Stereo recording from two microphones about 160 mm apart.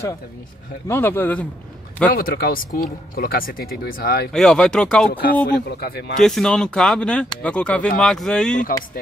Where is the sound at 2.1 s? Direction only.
70° left (ahead or behind).